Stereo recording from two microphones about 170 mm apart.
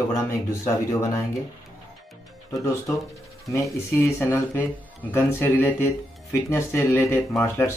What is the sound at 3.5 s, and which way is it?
Speech, 15° left (ahead or behind).